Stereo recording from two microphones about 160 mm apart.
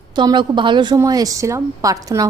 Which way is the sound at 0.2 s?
30° right (ahead or behind).